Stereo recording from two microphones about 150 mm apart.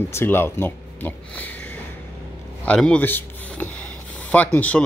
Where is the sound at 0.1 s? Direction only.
15° left (ahead or behind).